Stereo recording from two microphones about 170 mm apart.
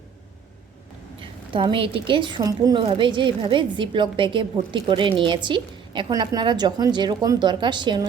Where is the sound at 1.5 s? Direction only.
30° right (ahead or behind).